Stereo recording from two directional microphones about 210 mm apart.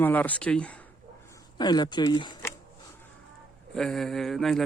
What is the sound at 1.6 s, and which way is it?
Speech, 20° left (ahead or behind).